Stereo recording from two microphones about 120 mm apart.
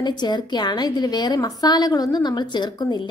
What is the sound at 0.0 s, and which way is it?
A woman's voice, 35° left (ahead or behind).